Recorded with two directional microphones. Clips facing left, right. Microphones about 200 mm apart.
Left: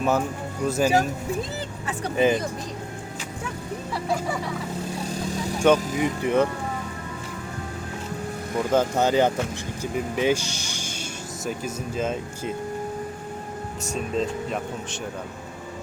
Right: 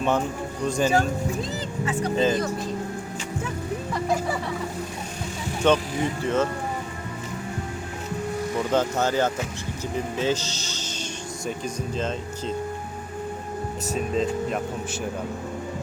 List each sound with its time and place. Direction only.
0.6 s speech: 5° left (ahead or behind)
2.1 s speech: 15° left (ahead or behind)
5.6 s speech: 10° left (ahead or behind)
8.7 s speech: 10° left (ahead or behind)
13.8 s speech: centre (ahead or behind)